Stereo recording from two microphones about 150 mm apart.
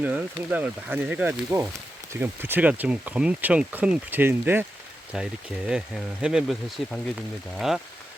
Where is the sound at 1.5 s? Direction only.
20° right (ahead or behind).